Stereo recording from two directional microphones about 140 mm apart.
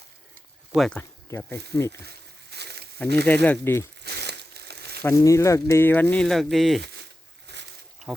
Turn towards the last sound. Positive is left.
turn(degrees=0)  # may be behind; listen again after turning